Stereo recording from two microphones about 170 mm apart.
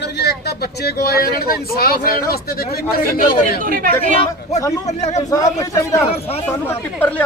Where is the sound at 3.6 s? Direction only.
55° right (ahead or behind).